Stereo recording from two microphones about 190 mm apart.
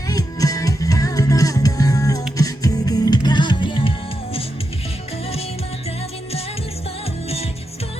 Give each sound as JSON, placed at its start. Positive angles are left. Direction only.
{"t": 0.1, "sound": "music", "side_deg": 20}